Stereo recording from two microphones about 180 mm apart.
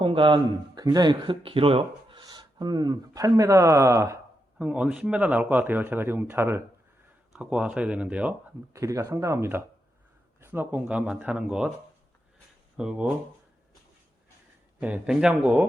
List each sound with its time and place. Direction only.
0.0 s speech: 30° right (ahead or behind); by 11.7 s 5° right (ahead or behind)
12.7 s speech: 5° right (ahead or behind)
14.8 s speech: 10° right (ahead or behind)